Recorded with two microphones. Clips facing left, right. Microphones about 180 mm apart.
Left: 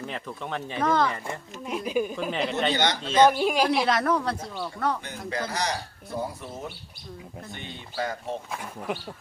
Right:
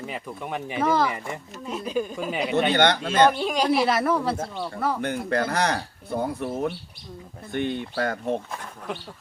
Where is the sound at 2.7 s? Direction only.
60° right (ahead or behind).